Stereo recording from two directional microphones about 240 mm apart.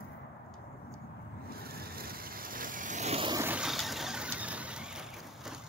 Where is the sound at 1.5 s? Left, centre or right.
Right.